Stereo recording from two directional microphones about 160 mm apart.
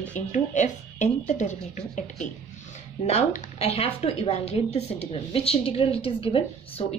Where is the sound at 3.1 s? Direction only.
40° left (ahead or behind).